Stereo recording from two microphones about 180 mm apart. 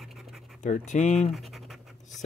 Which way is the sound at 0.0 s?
Centre (ahead or behind).